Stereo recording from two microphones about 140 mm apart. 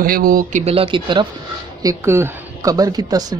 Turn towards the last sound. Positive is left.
turn(degrees=-25)  # may be behind; listen again after turning